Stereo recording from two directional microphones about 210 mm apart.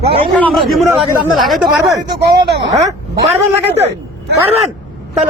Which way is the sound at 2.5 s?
55° right (ahead or behind).